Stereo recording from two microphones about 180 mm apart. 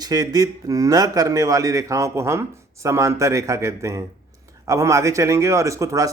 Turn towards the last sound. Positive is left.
turn(degrees=-15)  # may be behind; listen again after turning